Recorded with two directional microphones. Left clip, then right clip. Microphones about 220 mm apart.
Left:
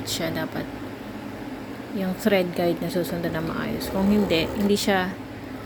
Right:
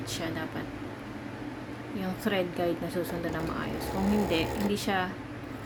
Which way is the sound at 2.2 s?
20° left (ahead or behind).